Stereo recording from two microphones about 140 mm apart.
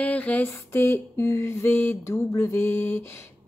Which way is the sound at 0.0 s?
10° left (ahead or behind).